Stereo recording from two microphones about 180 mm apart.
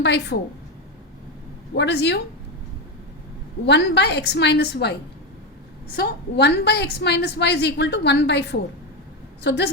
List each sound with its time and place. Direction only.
0.0 s a woman's voice: 70° left (ahead or behind)
1.7 s a woman's voice: 70° left (ahead or behind)
3.7 s a woman's voice: 70° left (ahead or behind)
6.0 s a woman's voice: 65° left (ahead or behind)